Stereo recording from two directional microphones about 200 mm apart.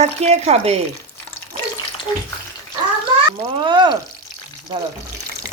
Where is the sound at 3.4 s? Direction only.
25° right (ahead or behind).